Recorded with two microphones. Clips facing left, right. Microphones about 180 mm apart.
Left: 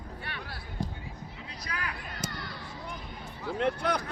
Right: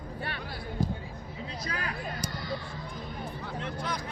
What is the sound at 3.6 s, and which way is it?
Speech, 65° left (ahead or behind).